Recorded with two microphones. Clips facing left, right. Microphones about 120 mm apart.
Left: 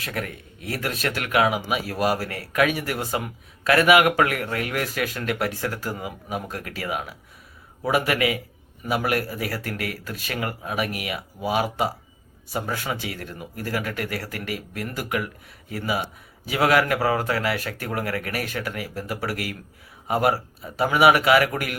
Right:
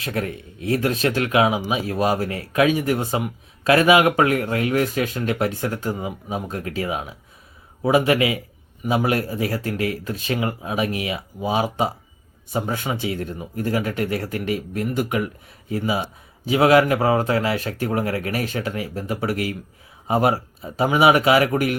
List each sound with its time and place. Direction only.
0.0 s speech: 30° right (ahead or behind)
16.5 s speech: 25° right (ahead or behind)